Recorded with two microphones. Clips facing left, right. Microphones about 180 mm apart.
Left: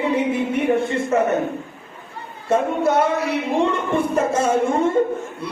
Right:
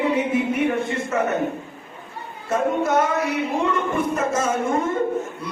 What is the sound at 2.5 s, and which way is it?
A man's voice, 30° left (ahead or behind).